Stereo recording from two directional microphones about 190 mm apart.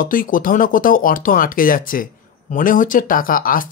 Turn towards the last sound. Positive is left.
turn(degrees=45)  # may be behind; listen again after turning